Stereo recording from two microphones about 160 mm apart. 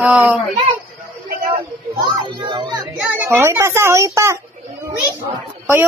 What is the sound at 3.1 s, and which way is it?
Speech, 15° right (ahead or behind).